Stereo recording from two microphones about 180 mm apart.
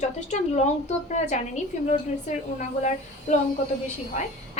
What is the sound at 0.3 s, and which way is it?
Speech, 40° left (ahead or behind).